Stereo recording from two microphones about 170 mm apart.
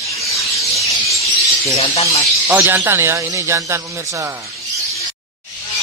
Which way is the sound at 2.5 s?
15° right (ahead or behind).